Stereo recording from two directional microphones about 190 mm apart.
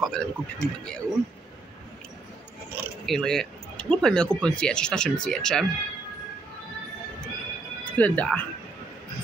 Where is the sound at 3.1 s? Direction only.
5° left (ahead or behind).